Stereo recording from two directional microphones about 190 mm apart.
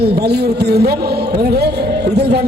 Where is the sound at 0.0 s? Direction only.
60° right (ahead or behind).